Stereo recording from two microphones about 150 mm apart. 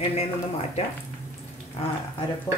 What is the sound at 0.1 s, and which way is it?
Speech, 45° left (ahead or behind).